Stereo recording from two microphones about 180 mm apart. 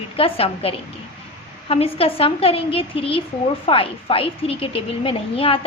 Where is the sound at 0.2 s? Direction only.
30° left (ahead or behind).